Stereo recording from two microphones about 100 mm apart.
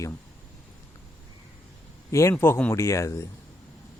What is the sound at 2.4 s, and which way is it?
Speech, 20° left (ahead or behind).